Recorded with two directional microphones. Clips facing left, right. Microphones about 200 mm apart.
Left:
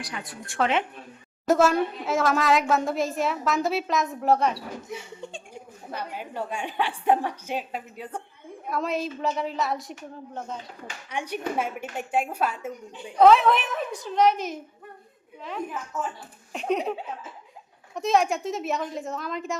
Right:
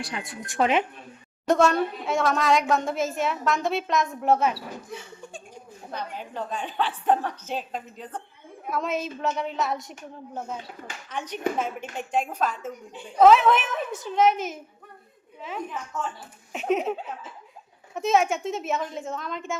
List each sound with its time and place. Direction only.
0.0 s speech: 25° right (ahead or behind)
1.5 s a woman's voice: 5° left (ahead or behind)
4.9 s laughter: 20° left (ahead or behind)
5.9 s a woman's voice: 10° left (ahead or behind)
11.1 s a woman's voice: 10° left (ahead or behind)
13.1 s a woman's voice: centre (ahead or behind)